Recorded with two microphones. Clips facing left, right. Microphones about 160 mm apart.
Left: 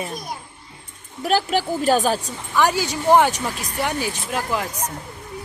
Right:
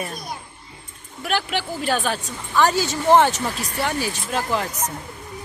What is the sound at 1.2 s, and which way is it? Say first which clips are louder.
Speech: left 4 dB; 40° left (ahead or behind).